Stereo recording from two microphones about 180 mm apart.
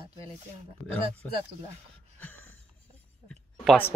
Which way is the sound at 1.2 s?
10° left (ahead or behind).